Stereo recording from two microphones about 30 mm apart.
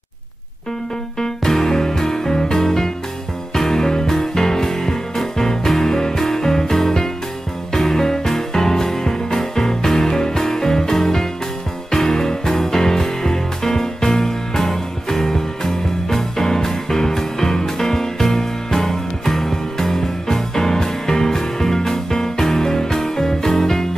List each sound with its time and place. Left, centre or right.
1.2 s music: centre